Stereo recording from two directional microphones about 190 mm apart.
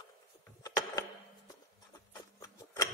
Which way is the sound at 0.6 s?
20° left (ahead or behind).